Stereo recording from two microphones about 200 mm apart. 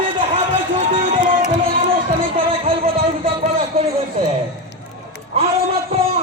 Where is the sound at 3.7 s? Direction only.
30° right (ahead or behind).